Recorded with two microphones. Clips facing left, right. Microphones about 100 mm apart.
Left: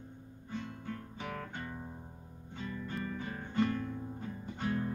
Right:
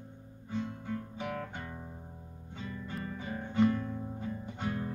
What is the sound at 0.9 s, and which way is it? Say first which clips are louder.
Guitar: right 4 dB; 5° right (ahead or behind).